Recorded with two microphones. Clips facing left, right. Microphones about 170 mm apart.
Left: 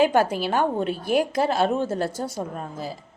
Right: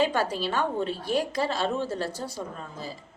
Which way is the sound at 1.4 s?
50° left (ahead or behind).